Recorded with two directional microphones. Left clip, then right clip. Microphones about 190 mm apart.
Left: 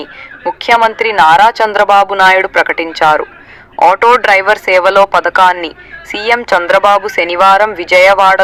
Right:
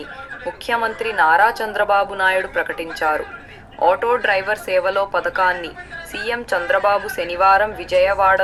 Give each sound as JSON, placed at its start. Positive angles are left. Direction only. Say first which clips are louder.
{"t": 0.0, "sound": "speech", "louder": "left 9 dB", "side_deg": 50}